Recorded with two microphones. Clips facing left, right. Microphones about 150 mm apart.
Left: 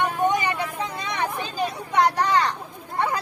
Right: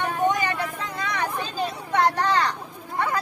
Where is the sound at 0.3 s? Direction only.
20° left (ahead or behind).